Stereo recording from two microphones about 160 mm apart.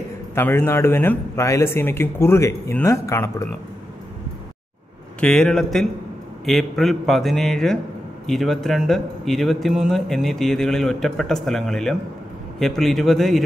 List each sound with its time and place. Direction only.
0.3 s speech: 15° left (ahead or behind)
5.2 s speech: 5° left (ahead or behind)